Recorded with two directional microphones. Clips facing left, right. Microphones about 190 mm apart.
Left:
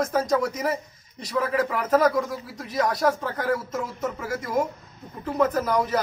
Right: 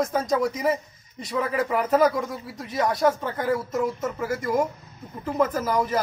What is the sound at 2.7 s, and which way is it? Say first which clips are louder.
Speech: even; 25° right (ahead or behind).